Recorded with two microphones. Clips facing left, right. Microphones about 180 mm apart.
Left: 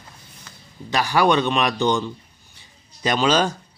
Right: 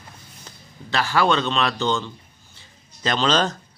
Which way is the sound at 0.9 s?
15° left (ahead or behind).